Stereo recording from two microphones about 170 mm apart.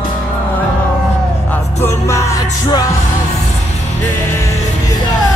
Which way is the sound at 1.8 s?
15° left (ahead or behind).